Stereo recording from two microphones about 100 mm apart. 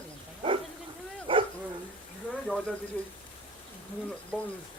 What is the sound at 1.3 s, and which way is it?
Dog, 60° right (ahead or behind).